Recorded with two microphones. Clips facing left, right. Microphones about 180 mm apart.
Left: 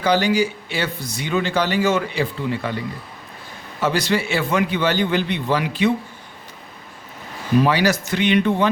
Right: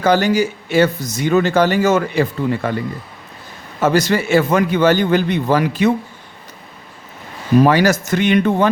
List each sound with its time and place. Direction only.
0.0 s speech: 45° right (ahead or behind)
7.6 s speech: 45° right (ahead or behind)